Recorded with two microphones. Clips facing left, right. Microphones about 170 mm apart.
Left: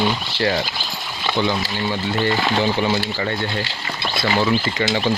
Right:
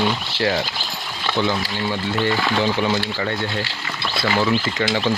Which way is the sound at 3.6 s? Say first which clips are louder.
Left 1 dB; 20° left (ahead or behind).